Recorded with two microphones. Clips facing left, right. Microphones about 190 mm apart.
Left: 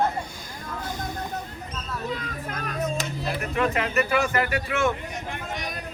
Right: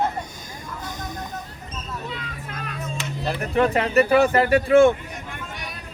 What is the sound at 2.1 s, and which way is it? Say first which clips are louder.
Children playing: left 3 dB; 45° left (ahead or behind).